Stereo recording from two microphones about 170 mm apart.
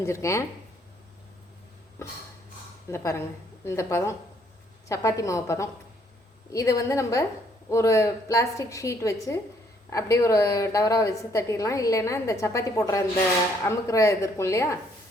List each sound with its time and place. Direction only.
0.0 s a woman's voice: 15° left (ahead or behind)
2.0 s a woman's voice: 15° left (ahead or behind)